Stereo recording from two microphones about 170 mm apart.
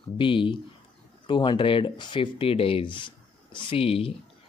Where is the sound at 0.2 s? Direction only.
30° left (ahead or behind).